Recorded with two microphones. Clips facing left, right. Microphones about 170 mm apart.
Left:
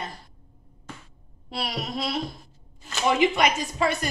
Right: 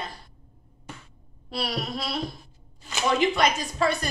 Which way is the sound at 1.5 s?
20° left (ahead or behind).